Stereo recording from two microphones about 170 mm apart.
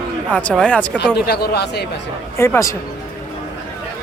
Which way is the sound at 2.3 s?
15° left (ahead or behind).